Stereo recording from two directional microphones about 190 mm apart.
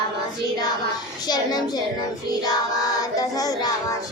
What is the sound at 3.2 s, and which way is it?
Speech, 20° left (ahead or behind).